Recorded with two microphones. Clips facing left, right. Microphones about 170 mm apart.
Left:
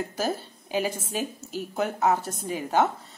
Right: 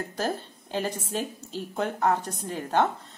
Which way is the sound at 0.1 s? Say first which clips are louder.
Left 1 dB; 5° left (ahead or behind).